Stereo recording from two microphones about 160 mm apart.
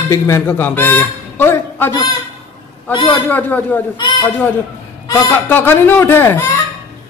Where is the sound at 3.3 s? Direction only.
10° left (ahead or behind).